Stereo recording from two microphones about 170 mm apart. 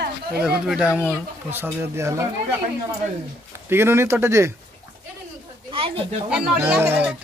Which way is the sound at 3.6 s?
15° right (ahead or behind).